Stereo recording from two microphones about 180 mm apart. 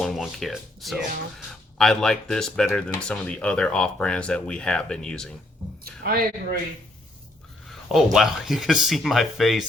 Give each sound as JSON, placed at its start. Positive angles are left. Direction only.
{"t": 0.0, "sound": "speech", "side_deg": 0}
{"t": 5.8, "sound": "speech", "side_deg": -55}
{"t": 7.7, "sound": "speech", "side_deg": 0}